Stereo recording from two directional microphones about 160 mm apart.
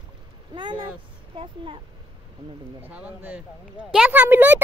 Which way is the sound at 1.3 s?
30° right (ahead or behind).